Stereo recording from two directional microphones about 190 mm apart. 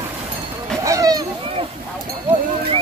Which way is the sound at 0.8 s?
15° right (ahead or behind).